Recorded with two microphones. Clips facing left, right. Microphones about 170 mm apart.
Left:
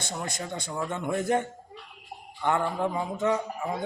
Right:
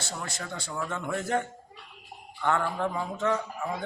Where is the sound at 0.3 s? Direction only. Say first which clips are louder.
Left 2 dB; 15° left (ahead or behind).